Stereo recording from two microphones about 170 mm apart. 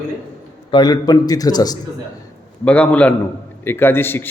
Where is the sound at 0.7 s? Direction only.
25° left (ahead or behind).